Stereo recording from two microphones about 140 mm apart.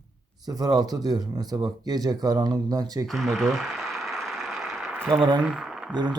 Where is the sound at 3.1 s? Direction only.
Centre (ahead or behind).